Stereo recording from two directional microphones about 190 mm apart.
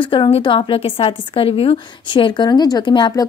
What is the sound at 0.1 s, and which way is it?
A woman's voice, 25° left (ahead or behind).